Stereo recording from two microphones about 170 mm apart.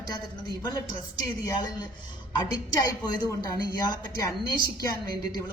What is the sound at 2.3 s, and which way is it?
A woman's voice, 25° left (ahead or behind).